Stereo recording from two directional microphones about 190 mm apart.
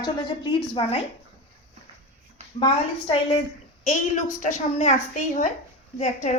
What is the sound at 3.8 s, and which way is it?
A woman's voice, 40° left (ahead or behind).